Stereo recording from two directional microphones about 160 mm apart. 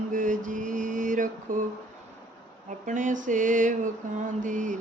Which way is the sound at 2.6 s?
50° right (ahead or behind).